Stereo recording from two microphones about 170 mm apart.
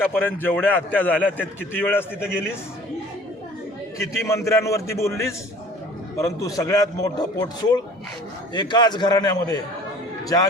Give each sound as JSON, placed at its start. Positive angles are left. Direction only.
{"t": 0.0, "sound": "a man's voice", "side_deg": 10}
{"t": 3.9, "sound": "a man's voice", "side_deg": 20}